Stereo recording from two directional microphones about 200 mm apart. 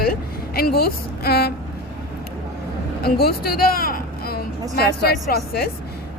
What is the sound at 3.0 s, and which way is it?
A woman's voice, 50° left (ahead or behind).